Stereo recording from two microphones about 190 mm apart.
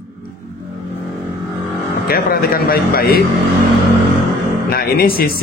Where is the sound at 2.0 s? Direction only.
50° left (ahead or behind).